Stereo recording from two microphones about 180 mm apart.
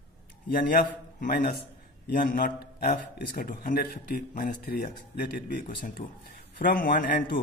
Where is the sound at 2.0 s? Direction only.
55° left (ahead or behind).